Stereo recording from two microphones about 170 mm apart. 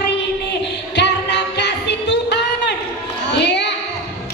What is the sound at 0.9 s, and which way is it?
Music, 90° left.